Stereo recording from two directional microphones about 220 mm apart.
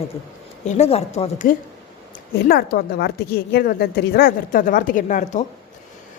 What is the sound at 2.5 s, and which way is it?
A woman's voice, 45° left (ahead or behind).